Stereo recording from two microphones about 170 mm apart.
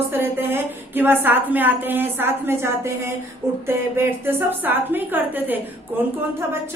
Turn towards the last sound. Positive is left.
turn(degrees=-10)  # may be behind; listen again after turning